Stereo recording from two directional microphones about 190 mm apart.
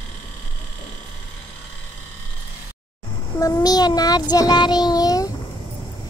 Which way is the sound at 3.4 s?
20° left (ahead or behind).